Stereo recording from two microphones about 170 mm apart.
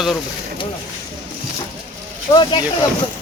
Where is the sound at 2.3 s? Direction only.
30° left (ahead or behind).